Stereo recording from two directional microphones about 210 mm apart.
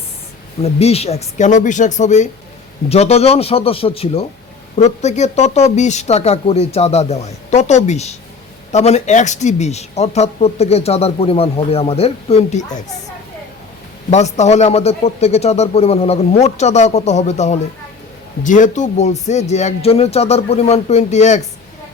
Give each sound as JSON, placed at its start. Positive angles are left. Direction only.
{"t": 0.6, "sound": "speech", "side_deg": 30}
{"t": 14.1, "sound": "speech", "side_deg": 35}